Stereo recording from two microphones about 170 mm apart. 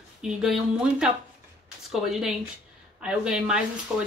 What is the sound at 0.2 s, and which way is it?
Speech, 5° right (ahead or behind).